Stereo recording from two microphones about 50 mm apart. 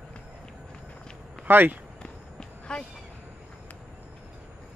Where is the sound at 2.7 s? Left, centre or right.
Centre.